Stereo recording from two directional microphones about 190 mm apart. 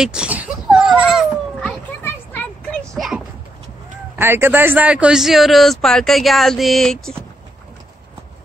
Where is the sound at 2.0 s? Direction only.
10° left (ahead or behind).